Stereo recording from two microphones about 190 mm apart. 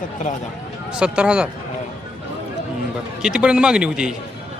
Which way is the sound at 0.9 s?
5° right (ahead or behind).